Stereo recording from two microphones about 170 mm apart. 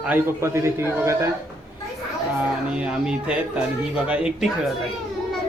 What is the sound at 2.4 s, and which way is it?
Speech, 5° right (ahead or behind).